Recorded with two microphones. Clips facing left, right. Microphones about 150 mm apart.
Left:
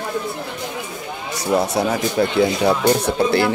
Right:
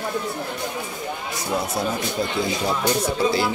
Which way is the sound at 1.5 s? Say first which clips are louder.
Left 7 dB; 75° left (ahead or behind).